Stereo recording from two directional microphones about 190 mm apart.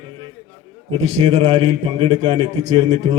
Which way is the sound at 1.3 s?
25° right (ahead or behind).